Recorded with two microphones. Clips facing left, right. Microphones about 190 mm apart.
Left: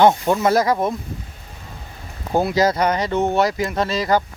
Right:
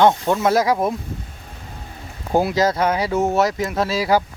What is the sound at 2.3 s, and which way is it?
Speech, 5° right (ahead or behind).